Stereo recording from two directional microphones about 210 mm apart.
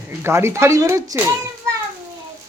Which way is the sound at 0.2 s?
10° right (ahead or behind).